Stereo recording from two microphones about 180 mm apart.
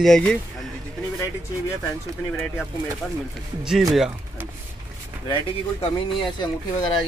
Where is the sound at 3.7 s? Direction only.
Centre (ahead or behind).